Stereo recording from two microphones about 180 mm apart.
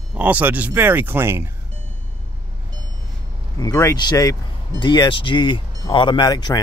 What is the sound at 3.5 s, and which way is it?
Speech, 20° left (ahead or behind).